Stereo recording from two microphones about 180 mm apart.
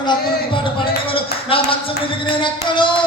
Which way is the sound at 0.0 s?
25° left (ahead or behind).